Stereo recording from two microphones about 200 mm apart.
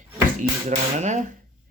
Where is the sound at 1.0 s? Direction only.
35° right (ahead or behind).